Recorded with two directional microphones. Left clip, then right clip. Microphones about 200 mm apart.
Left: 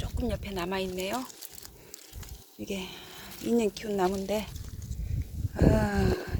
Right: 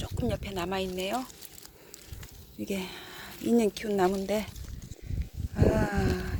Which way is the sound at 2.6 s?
25° right (ahead or behind).